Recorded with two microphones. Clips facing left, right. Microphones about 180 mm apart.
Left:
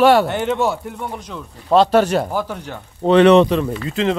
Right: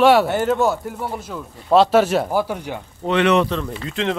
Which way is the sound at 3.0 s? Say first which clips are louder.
Left 7 dB; 35° left (ahead or behind).